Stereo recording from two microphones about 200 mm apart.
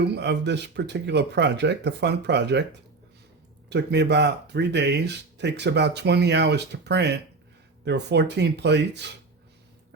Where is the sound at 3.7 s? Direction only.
55° right (ahead or behind).